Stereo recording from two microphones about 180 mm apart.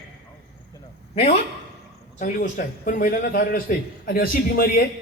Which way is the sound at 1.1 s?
35° left (ahead or behind).